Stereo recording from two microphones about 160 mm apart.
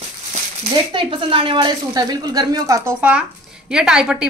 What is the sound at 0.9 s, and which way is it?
A woman's voice, 30° right (ahead or behind).